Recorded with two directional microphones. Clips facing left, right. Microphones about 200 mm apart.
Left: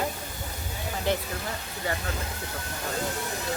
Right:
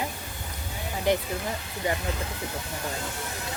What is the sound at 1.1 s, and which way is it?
Speech, 15° right (ahead or behind).